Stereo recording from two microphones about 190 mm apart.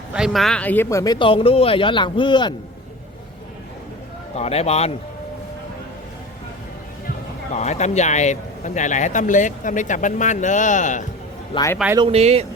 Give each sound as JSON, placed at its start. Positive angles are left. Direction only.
{"t": 0.1, "sound": "speech", "side_deg": 0}
{"t": 4.4, "sound": "a man's voice", "side_deg": 35}
{"t": 7.5, "sound": "a man's voice", "side_deg": 35}
{"t": 11.5, "sound": "a man's voice", "side_deg": 15}
{"t": 11.9, "sound": "speech", "side_deg": -30}